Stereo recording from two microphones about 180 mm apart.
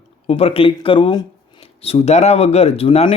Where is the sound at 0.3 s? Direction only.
30° left (ahead or behind).